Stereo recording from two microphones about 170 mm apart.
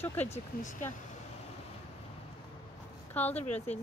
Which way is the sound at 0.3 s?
45° left (ahead or behind).